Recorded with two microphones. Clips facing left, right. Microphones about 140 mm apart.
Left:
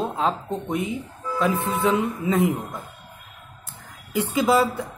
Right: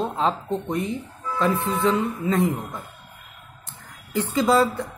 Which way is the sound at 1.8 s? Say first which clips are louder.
Even; 10° left (ahead or behind).